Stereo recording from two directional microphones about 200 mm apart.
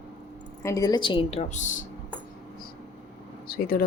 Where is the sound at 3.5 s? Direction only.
50° left (ahead or behind).